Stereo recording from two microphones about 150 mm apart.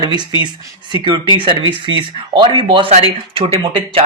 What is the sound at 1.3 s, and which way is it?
Speech, 35° right (ahead or behind).